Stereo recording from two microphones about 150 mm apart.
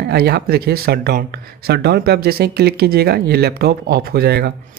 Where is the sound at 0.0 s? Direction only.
90° right.